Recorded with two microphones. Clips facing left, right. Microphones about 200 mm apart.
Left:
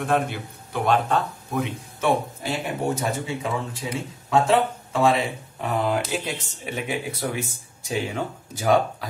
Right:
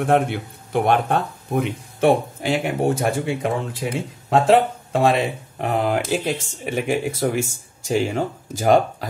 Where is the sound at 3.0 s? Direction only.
55° right (ahead or behind).